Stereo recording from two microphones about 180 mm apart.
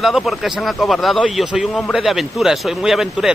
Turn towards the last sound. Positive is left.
turn(degrees=0)  # may be behind; listen again after turning